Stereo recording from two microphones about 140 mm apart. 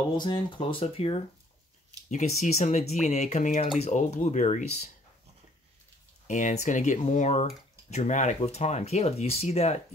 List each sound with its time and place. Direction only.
0.2 s speech: 35° left (ahead or behind)
2.0 s speech: 55° left (ahead or behind)
6.2 s speech: 65° left (ahead or behind)